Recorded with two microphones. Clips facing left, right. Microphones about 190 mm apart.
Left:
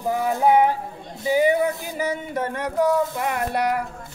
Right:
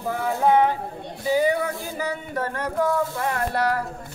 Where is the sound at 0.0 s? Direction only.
15° left (ahead or behind).